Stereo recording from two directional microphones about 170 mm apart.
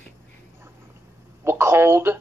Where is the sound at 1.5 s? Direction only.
15° right (ahead or behind).